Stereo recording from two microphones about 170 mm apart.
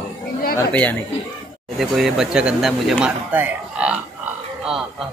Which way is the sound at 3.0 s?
10° right (ahead or behind).